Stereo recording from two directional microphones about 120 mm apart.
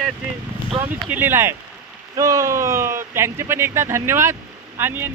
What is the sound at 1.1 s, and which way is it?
Speech, 20° right (ahead or behind).